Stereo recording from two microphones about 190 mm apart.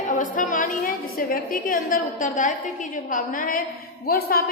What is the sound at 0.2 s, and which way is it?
A woman's voice, 45° left (ahead or behind).